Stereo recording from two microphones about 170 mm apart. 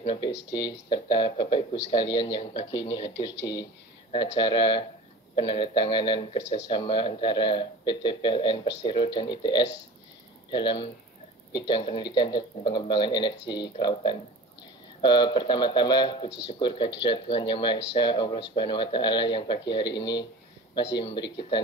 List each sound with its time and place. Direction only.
0.0 s speech: 30° left (ahead or behind)